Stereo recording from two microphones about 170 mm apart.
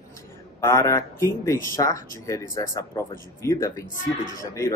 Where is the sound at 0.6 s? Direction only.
15° left (ahead or behind).